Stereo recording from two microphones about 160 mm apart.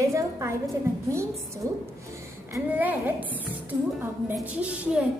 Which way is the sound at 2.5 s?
10° right (ahead or behind).